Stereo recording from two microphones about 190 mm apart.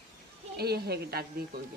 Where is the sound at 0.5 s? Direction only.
55° right (ahead or behind).